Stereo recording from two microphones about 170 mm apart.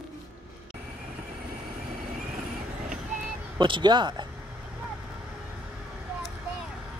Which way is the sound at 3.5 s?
30° right (ahead or behind).